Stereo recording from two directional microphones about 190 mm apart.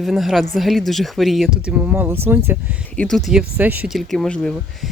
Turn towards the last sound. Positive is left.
turn(degrees=0)  # may be behind; listen again after turning